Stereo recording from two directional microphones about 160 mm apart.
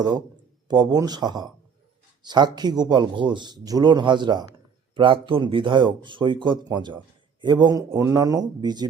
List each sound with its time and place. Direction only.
0.7 s speech: 25° right (ahead or behind)